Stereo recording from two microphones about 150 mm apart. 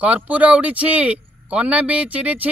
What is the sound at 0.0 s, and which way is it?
Speech, 10° right (ahead or behind).